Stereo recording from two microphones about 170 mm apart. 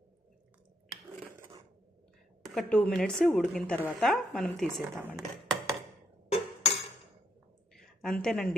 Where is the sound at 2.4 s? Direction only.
Centre (ahead or behind).